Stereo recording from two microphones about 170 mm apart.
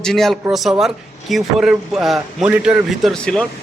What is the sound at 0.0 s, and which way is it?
Speech, centre (ahead or behind).